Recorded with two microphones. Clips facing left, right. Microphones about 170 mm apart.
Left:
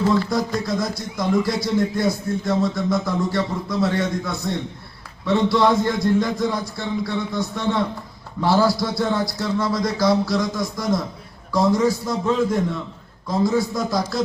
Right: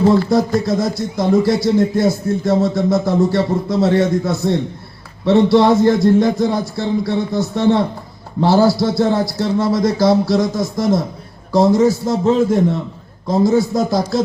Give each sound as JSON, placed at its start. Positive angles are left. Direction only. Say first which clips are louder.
{"t": 0.6, "sound": "speech", "louder": "right 6 dB", "side_deg": -25}